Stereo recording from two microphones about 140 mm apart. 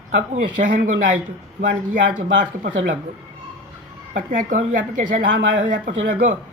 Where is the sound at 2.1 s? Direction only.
70° right (ahead or behind).